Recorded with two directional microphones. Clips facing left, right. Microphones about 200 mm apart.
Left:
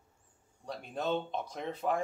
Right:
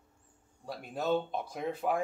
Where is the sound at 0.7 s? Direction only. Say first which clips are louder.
Right 2 dB; 5° right (ahead or behind).